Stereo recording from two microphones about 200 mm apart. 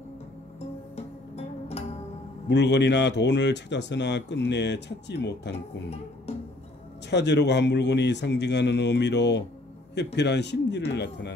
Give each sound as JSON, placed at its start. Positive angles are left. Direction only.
{"t": 0.9, "sound": "music", "side_deg": 30}
{"t": 2.4, "sound": "speech", "side_deg": 60}
{"t": 7.1, "sound": "speech", "side_deg": 60}